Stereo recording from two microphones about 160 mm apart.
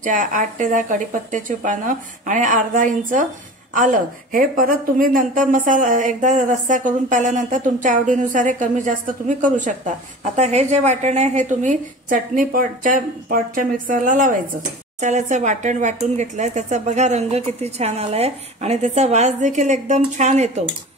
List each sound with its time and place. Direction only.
0.0 s a woman's voice: 55° right (ahead or behind)